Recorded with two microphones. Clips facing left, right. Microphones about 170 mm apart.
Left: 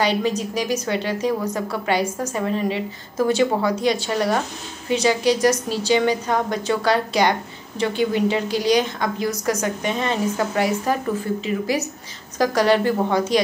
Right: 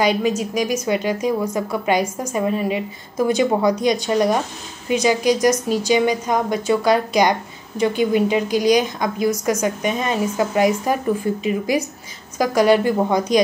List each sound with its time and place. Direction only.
0.0 s a woman's voice: 10° right (ahead or behind)